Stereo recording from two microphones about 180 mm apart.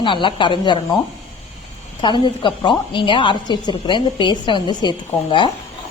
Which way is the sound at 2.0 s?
25° left (ahead or behind).